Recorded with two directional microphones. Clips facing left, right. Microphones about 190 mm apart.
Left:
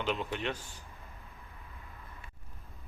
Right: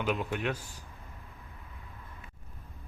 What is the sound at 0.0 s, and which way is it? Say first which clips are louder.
Speech: right 2 dB; 5° right (ahead or behind).